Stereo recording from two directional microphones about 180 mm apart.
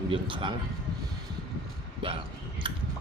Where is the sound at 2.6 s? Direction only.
30° right (ahead or behind).